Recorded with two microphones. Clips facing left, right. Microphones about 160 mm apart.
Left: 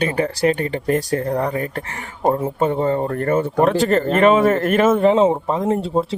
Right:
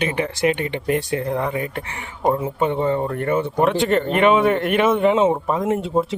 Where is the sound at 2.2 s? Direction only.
30° left (ahead or behind).